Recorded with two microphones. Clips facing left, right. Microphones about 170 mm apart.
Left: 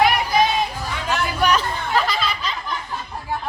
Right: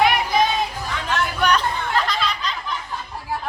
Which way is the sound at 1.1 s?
5° left (ahead or behind).